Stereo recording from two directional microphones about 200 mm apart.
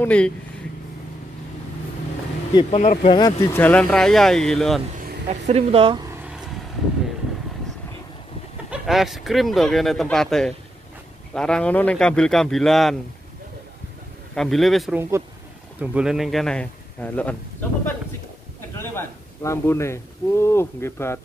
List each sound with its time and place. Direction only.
0.0 s speech: 5° left (ahead or behind)
2.7 s speech: 35° left (ahead or behind)
3.2 s speech: 15° left (ahead or behind); by 4.8 s centre (ahead or behind)
5.3 s speech: 30° right (ahead or behind)
8.6 s speech: centre (ahead or behind)
14.3 s speech: centre (ahead or behind)
15.0 s speech: 15° right (ahead or behind); by 21.2 s 10° left (ahead or behind)